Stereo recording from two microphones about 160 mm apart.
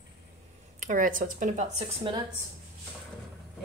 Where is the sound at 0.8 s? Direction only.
55° right (ahead or behind).